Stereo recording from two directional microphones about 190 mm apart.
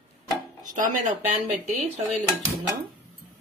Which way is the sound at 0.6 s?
45° right (ahead or behind).